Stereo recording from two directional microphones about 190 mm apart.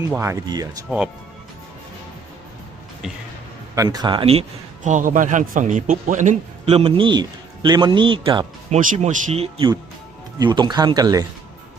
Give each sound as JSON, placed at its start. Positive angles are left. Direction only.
{"t": 0.1, "sound": "speech", "side_deg": -15}
{"t": 0.9, "sound": "speech", "side_deg": -5}
{"t": 3.8, "sound": "a man's voice", "side_deg": -20}
{"t": 8.8, "sound": "a man's voice", "side_deg": -40}